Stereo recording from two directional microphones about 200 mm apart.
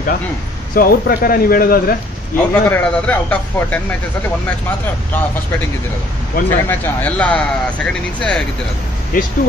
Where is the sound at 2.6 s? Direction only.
10° left (ahead or behind).